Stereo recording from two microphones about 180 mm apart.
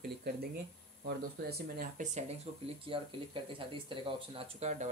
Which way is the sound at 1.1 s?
60° right (ahead or behind).